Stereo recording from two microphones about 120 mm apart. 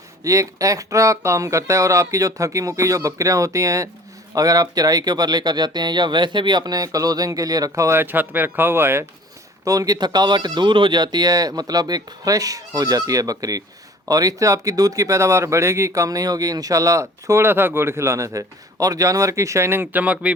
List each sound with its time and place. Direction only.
0.3 s speech: 25° right (ahead or behind)
9.6 s speech: 30° right (ahead or behind); by 20.3 s 15° right (ahead or behind)